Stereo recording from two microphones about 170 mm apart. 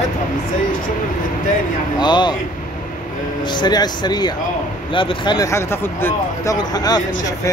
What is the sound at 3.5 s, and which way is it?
Speech, 25° left (ahead or behind).